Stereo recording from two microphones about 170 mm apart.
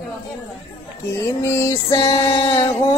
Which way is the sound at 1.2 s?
15° left (ahead or behind).